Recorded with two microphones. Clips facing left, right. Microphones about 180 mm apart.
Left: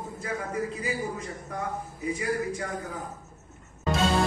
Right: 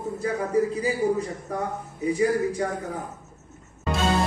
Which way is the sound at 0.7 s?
35° right (ahead or behind).